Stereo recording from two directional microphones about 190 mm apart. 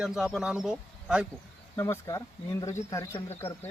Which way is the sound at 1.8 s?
15° left (ahead or behind).